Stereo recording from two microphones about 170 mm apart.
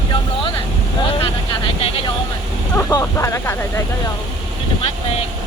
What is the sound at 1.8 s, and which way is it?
Vehicle, 35° left (ahead or behind).